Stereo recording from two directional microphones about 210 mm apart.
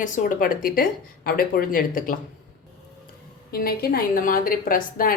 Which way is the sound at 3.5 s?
45° left (ahead or behind).